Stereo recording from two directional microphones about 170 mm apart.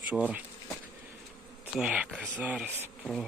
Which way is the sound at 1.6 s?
5° right (ahead or behind).